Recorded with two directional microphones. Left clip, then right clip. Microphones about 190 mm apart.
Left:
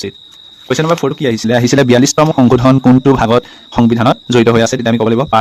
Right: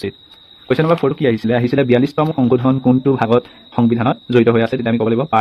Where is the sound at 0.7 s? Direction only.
20° left (ahead or behind).